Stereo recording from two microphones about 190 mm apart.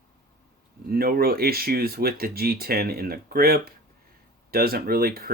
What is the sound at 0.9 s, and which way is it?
Speech, 50° right (ahead or behind).